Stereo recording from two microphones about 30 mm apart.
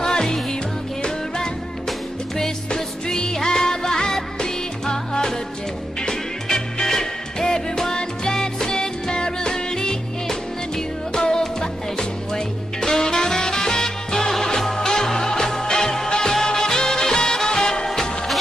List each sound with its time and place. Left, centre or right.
0.0 s music: left
1.9 s music: centre